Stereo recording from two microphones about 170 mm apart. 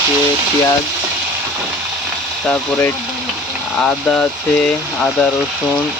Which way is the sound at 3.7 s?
5° left (ahead or behind).